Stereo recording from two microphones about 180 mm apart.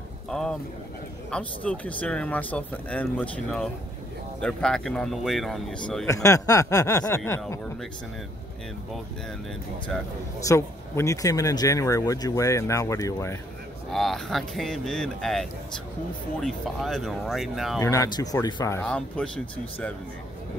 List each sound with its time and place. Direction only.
0.3 s speech: 5° left (ahead or behind)
6.0 s speech: 15° left (ahead or behind)
10.4 s speech: 15° left (ahead or behind)
13.9 s speech: centre (ahead or behind)
17.7 s speech: 15° left (ahead or behind)